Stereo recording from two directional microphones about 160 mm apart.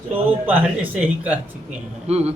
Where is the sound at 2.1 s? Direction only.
40° right (ahead or behind).